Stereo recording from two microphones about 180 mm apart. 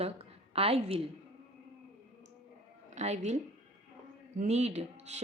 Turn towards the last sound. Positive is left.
turn(degrees=-35)  # may be behind; listen again after turning